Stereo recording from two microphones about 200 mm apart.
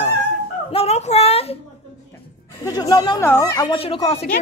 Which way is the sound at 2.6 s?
20° left (ahead or behind).